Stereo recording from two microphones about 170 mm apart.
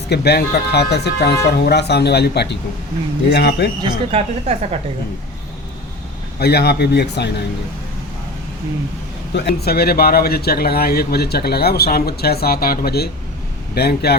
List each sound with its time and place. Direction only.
0.1 s a man's voice: 70° left (ahead or behind)
3.8 s speech: 35° right (ahead or behind)
6.4 s a man's voice: 70° left (ahead or behind)
9.3 s a man's voice: 75° left (ahead or behind)